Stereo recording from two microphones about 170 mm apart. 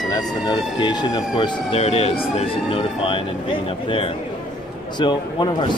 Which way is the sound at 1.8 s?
35° left (ahead or behind).